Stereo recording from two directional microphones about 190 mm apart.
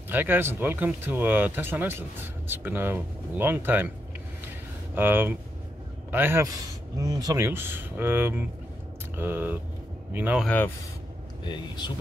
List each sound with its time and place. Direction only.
0.1 s speech: 10° right (ahead or behind)
4.9 s speech: 10° right (ahead or behind)
10.4 s speech: 5° left (ahead or behind)
11.4 s speech: 25° left (ahead or behind)